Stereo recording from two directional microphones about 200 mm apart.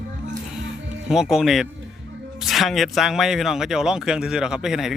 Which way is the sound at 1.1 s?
Centre (ahead or behind).